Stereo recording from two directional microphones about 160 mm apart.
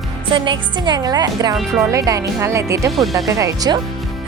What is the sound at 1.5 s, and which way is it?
Speech, centre (ahead or behind).